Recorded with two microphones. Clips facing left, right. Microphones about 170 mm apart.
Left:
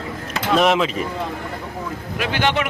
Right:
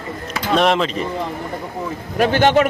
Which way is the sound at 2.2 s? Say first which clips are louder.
Right 7 dB; 45° right (ahead or behind).